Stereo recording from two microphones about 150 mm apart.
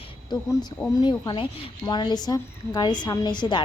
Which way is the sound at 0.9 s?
25° left (ahead or behind).